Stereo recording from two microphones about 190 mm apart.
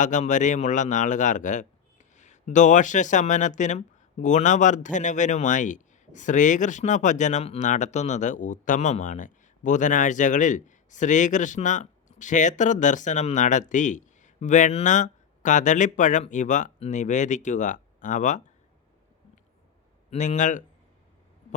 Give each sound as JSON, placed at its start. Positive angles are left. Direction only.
{"t": 0.0, "sound": "speech", "side_deg": 40}
{"t": 20.1, "sound": "speech", "side_deg": 40}